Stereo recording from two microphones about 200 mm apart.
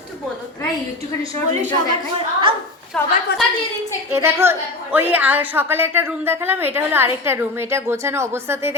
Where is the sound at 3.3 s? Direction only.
55° left (ahead or behind).